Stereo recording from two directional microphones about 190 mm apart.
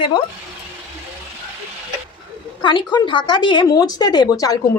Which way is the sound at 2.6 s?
25° left (ahead or behind).